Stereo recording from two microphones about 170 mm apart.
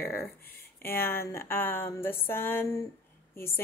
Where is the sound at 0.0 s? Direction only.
10° left (ahead or behind).